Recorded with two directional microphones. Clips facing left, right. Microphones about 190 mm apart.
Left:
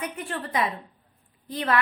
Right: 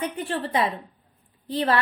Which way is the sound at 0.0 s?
30° right (ahead or behind).